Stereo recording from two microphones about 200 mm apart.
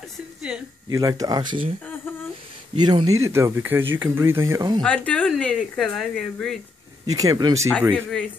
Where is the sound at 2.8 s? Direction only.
20° right (ahead or behind).